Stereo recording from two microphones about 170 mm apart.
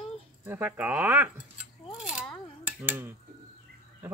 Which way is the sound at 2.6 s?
10° right (ahead or behind).